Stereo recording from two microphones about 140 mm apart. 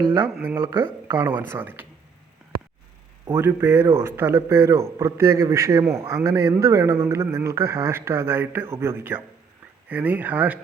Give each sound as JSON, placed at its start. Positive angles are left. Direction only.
{"t": 0.4, "sound": "speech", "side_deg": -20}
{"t": 3.2, "sound": "a man's voice", "side_deg": -15}